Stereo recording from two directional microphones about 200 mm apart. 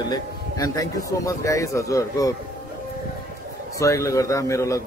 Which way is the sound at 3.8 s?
15° left (ahead or behind).